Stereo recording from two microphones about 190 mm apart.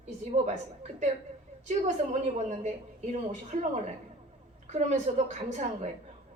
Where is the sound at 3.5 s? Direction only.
40° right (ahead or behind).